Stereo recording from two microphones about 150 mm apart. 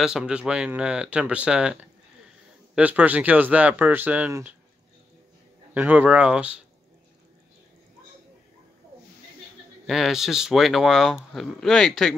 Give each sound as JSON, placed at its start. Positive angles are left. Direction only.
{"t": 0.0, "sound": "speech", "side_deg": -5}
{"t": 5.8, "sound": "speech", "side_deg": -10}
{"t": 9.8, "sound": "speech", "side_deg": 0}